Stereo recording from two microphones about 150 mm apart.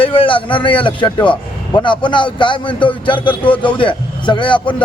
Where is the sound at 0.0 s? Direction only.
35° left (ahead or behind).